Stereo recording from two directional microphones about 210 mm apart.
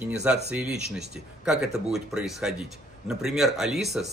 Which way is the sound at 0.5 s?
5° right (ahead or behind).